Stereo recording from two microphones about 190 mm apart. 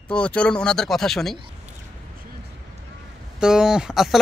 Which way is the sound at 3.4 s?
5° right (ahead or behind).